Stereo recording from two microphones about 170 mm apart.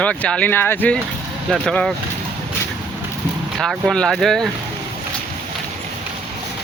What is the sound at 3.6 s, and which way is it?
Speech, centre (ahead or behind).